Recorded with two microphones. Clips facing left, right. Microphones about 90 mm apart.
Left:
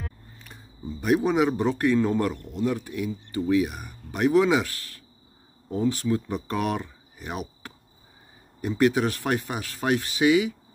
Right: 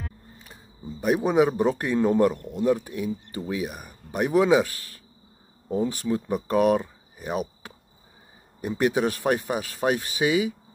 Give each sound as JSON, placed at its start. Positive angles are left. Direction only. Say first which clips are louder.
{"t": 1.0, "sound": "speech", "louder": "right 1 dB", "side_deg": -20}
{"t": 8.7, "sound": "speech", "louder": "left 1 dB", "side_deg": -20}